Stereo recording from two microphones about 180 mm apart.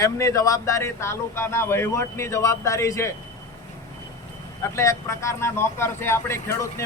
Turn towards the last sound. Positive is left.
turn(degrees=15)  # may be behind; listen again after turning